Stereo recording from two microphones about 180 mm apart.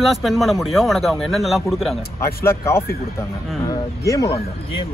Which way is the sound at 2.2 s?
15° left (ahead or behind).